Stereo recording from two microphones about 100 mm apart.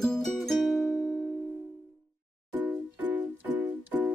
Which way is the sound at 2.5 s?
15° right (ahead or behind).